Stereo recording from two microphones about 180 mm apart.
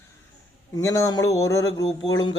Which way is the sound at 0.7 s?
15° left (ahead or behind).